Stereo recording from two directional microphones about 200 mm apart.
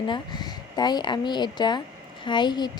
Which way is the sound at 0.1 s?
20° left (ahead or behind).